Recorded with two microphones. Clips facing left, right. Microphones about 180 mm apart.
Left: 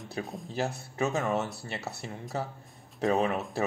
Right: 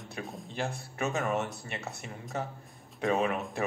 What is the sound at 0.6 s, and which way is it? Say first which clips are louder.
Speech: left 4 dB; 35° left (ahead or behind).